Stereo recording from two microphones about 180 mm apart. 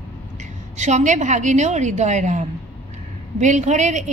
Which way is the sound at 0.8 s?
40° right (ahead or behind).